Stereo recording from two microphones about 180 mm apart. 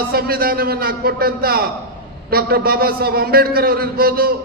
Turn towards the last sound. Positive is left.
turn(degrees=-55)  # may be behind; listen again after turning